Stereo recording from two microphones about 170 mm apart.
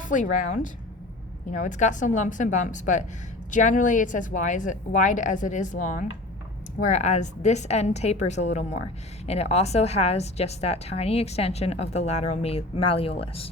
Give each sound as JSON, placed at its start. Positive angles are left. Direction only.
{"t": 0.0, "sound": "a woman's voice", "side_deg": 50}